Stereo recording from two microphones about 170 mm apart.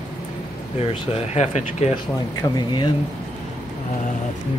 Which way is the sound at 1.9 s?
25° left (ahead or behind).